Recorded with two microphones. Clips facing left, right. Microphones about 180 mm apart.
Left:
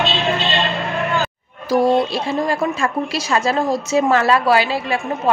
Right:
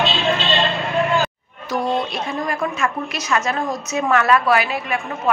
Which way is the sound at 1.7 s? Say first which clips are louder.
Left 6 dB; 30° left (ahead or behind).